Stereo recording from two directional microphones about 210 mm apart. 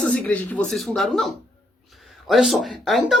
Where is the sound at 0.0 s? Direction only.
5° left (ahead or behind).